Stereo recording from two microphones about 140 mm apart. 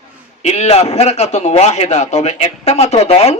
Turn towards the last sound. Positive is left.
turn(degrees=50)  # may be behind; listen again after turning